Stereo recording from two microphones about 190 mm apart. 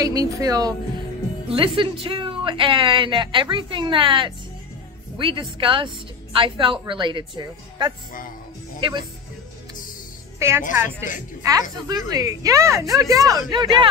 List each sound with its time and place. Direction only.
0.0 s a woman's voice: 20° right (ahead or behind)
10.7 s speech: 10° right (ahead or behind)